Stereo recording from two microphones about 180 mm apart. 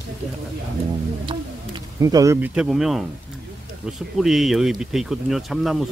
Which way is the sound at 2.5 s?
5° right (ahead or behind).